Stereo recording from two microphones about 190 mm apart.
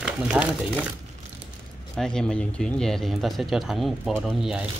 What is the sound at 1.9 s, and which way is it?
Speech, 5° left (ahead or behind).